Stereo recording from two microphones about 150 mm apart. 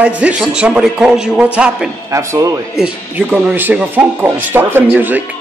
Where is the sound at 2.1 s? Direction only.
20° right (ahead or behind).